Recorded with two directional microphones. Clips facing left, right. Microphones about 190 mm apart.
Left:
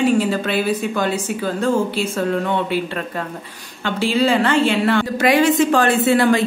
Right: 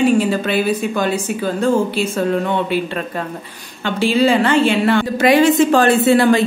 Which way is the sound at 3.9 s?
15° right (ahead or behind).